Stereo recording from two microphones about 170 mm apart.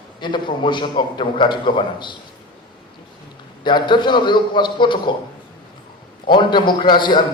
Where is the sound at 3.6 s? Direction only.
25° left (ahead or behind).